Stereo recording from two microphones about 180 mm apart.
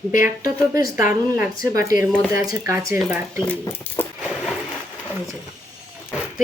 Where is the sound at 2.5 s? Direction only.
15° right (ahead or behind).